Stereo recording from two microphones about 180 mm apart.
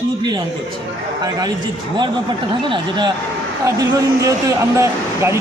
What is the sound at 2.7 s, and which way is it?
Speech, 25° right (ahead or behind).